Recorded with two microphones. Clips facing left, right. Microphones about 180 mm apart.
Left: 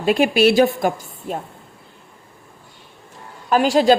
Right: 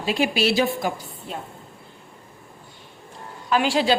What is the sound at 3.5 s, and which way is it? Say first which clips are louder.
Speech: left 6 dB; 45° left (ahead or behind).